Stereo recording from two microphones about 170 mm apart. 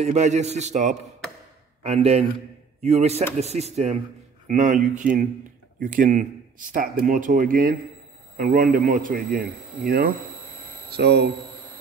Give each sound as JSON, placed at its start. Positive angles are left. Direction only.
{"t": 0.0, "sound": "a man's voice", "side_deg": -40}
{"t": 10.9, "sound": "speech", "side_deg": -70}